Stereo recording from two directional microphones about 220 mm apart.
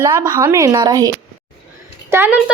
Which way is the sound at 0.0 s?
20° right (ahead or behind).